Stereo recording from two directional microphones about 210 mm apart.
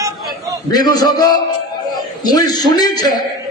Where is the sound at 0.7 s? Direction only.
20° left (ahead or behind).